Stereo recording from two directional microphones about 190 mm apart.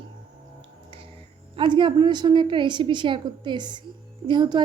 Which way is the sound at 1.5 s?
25° right (ahead or behind).